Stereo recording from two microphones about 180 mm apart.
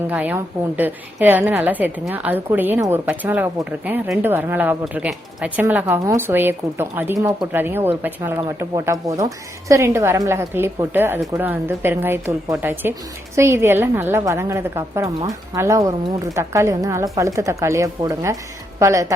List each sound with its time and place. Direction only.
0.1 s a woman's voice: 10° right (ahead or behind)